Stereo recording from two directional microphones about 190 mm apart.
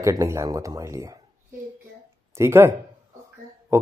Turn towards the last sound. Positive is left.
turn(degrees=-15)  # may be behind; listen again after turning